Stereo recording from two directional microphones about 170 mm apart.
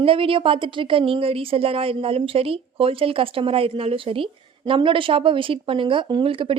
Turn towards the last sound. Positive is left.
turn(degrees=-30)  # may be behind; listen again after turning